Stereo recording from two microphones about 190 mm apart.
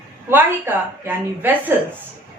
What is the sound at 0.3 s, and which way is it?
A woman's voice, 10° right (ahead or behind).